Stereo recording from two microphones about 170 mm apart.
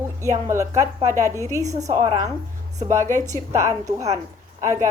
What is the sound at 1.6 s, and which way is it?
Speech, 20° right (ahead or behind).